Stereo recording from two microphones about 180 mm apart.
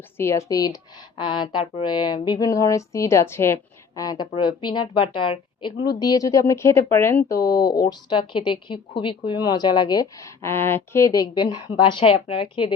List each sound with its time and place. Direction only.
0.2 s a woman's voice: 15° left (ahead or behind)